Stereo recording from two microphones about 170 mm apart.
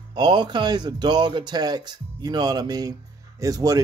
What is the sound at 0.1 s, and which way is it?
A man's voice, 25° right (ahead or behind).